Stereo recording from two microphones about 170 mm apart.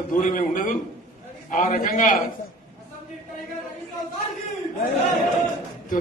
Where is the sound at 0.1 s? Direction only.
50° left (ahead or behind).